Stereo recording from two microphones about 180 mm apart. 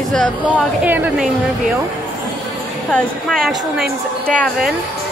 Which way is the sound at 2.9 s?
Centre (ahead or behind).